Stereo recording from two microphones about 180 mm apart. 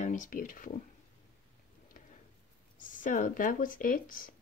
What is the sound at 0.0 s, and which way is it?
Speech, 45° left (ahead or behind).